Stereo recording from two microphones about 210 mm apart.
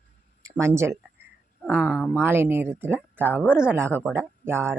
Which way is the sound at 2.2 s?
10° right (ahead or behind).